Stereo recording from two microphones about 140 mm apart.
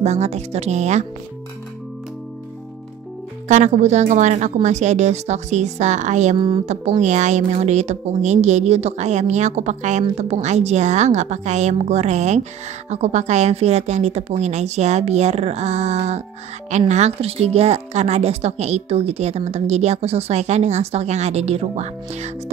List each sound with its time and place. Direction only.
0.0 s a woman's voice: 50° right (ahead or behind)
3.4 s a woman's voice: 60° right (ahead or behind)
6.3 s speech: 35° right (ahead or behind)
6.6 s a woman's voice: 55° right (ahead or behind)